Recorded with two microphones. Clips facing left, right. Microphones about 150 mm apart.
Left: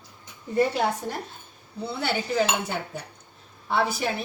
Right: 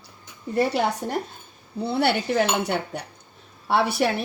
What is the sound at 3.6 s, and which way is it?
Speech, 70° right (ahead or behind).